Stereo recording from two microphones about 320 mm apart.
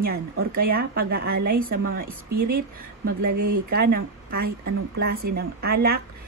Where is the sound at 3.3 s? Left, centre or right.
Right.